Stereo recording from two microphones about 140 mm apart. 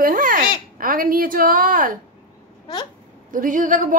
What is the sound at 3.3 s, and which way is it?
Speech, 70° right (ahead or behind).